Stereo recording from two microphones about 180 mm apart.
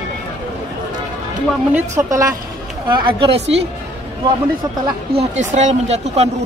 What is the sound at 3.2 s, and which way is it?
Speech, 30° right (ahead or behind).